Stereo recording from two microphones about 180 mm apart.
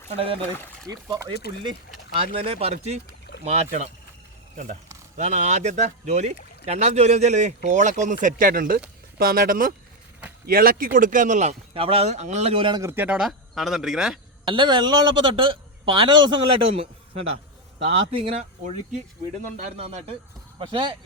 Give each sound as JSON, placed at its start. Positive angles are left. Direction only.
{"t": 0.2, "sound": "speech", "side_deg": -30}
{"t": 0.5, "sound": "speech", "side_deg": 10}
{"t": 0.9, "sound": "speech", "side_deg": -20}
{"t": 2.1, "sound": "speech", "side_deg": -30}
{"t": 12.9, "sound": "speech", "side_deg": -10}
{"t": 14.4, "sound": "speech", "side_deg": -25}
{"t": 17.8, "sound": "speech", "side_deg": -30}